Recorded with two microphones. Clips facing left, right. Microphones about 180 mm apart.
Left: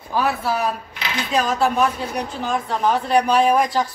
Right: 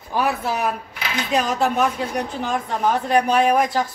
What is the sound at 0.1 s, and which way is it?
Speech, 15° right (ahead or behind).